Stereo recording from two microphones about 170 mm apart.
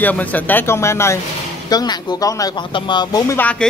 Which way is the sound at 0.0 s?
10° left (ahead or behind).